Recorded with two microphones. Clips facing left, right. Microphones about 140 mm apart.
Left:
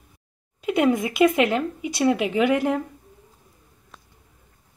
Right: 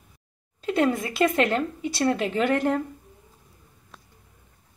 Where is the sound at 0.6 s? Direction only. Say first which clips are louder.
Left 3 dB; 10° left (ahead or behind).